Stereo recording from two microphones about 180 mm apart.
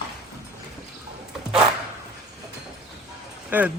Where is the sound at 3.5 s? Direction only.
10° right (ahead or behind).